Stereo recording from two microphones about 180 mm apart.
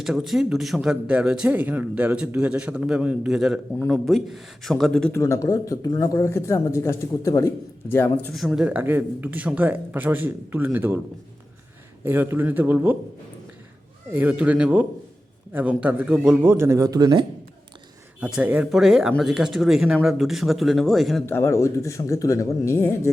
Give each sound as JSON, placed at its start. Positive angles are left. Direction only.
{"t": 0.0, "sound": "speech", "side_deg": 0}
{"t": 5.2, "sound": "speech", "side_deg": 15}
{"t": 12.0, "sound": "speech", "side_deg": -10}
{"t": 14.1, "sound": "speech", "side_deg": -10}
{"t": 18.2, "sound": "speech", "side_deg": -5}
{"t": 21.2, "sound": "speech", "side_deg": 15}